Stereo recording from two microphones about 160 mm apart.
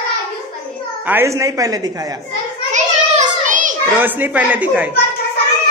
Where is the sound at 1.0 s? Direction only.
15° right (ahead or behind).